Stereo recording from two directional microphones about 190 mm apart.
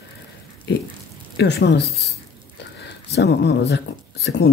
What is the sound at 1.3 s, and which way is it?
Speech, 65° left (ahead or behind).